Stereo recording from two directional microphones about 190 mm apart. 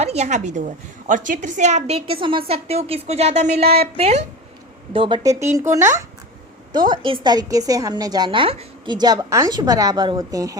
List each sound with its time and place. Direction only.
0.0 s a woman's voice: 35° right (ahead or behind); by 10.6 s 20° right (ahead or behind)